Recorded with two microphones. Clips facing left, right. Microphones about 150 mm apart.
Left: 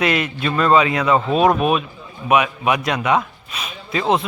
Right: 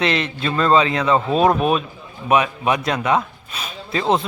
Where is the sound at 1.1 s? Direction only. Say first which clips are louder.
Even; 10° left (ahead or behind).